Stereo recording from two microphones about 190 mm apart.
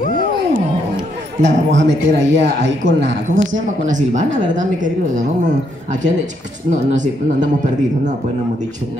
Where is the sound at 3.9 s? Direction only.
40° right (ahead or behind).